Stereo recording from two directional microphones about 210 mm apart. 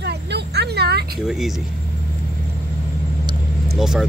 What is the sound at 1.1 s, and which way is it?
Speech, centre (ahead or behind).